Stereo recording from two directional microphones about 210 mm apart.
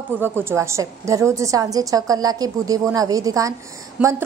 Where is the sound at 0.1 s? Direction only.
10° right (ahead or behind).